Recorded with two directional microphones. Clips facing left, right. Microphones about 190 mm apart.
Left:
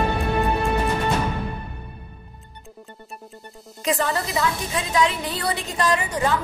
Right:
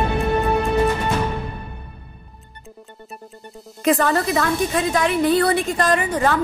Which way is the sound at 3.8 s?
55° right (ahead or behind).